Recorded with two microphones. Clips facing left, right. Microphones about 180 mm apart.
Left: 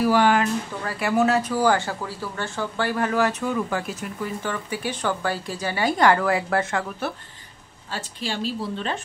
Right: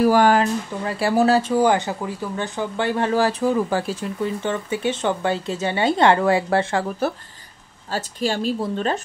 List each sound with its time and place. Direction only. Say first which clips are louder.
0.0 s a woman's voice: right 3 dB; 45° right (ahead or behind)
1.6 s speech: right 3 dB; 20° right (ahead or behind)
7.9 s a woman's voice: right 7 dB; 45° right (ahead or behind)